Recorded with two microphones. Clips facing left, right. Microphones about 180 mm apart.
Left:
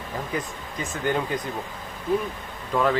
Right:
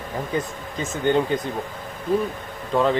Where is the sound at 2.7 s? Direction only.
25° right (ahead or behind).